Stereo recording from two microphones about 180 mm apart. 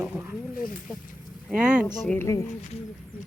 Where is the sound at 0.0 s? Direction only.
10° right (ahead or behind).